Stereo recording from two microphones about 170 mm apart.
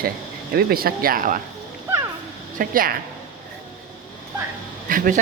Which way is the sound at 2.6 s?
55° right (ahead or behind).